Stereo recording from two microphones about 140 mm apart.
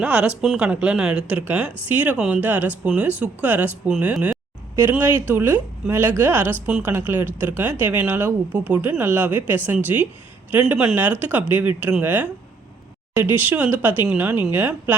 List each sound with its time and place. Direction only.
0.0 s speech: 10° right (ahead or behind)